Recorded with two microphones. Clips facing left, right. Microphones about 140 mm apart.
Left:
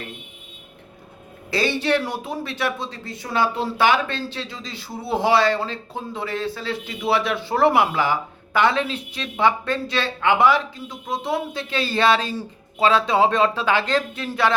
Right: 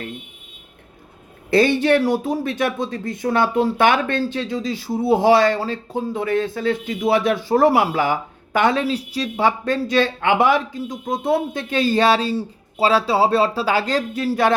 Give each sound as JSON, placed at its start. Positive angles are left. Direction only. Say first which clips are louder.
{"t": 1.5, "sound": "speech", "louder": "right 6 dB", "side_deg": -50}